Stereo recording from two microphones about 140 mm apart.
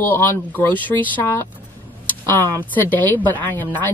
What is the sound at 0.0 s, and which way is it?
Speech, 15° left (ahead or behind).